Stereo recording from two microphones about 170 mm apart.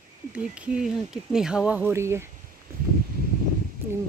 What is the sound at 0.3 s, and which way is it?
Speech, 5° right (ahead or behind).